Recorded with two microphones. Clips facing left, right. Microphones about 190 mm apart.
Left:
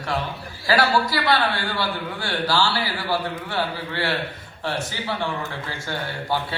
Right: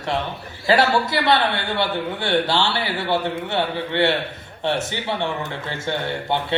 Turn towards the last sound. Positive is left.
turn(degrees=-25)  # may be behind; listen again after turning